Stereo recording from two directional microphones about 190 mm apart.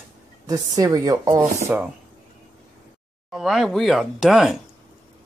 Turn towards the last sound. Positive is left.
turn(degrees=0)  # may be behind; listen again after turning